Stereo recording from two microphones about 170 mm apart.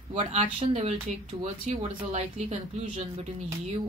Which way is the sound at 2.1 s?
40° right (ahead or behind).